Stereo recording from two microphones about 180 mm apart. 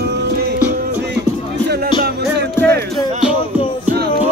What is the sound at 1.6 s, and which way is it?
Music, 65° right (ahead or behind).